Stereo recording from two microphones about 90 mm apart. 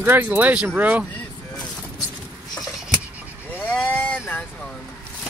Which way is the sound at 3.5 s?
20° left (ahead or behind).